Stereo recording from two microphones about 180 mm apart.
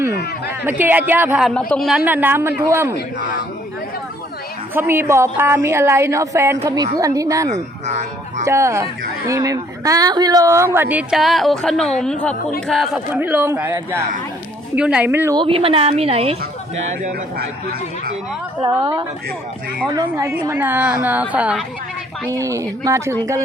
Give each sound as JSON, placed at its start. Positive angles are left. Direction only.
{"t": 0.1, "sound": "a sound", "side_deg": 60}
{"t": 0.6, "sound": "a woman's voice", "side_deg": -10}
{"t": 1.5, "sound": "a man's voice", "side_deg": 5}
{"t": 2.0, "sound": "a woman's voice", "side_deg": -10}
{"t": 4.7, "sound": "a woman's voice", "side_deg": -10}
{"t": 7.5, "sound": "a woman's voice", "side_deg": -40}
{"t": 8.4, "sound": "a woman's voice", "side_deg": -15}
{"t": 13.1, "sound": "a woman's voice", "side_deg": -10}
{"t": 15.4, "sound": "a woman's voice", "side_deg": -30}
{"t": 17.0, "sound": "speech", "side_deg": -55}
{"t": 18.8, "sound": "a woman's voice", "side_deg": -25}
{"t": 22.3, "sound": "a woman's voice", "side_deg": -15}